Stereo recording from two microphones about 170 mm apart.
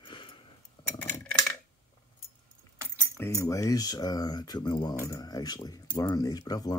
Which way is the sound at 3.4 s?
20° left (ahead or behind).